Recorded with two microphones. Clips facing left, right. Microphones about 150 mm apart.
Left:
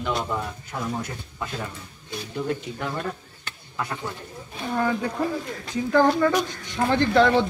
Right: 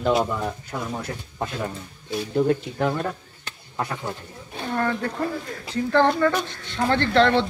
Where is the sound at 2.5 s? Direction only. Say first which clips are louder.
Right 6 dB; 45° right (ahead or behind).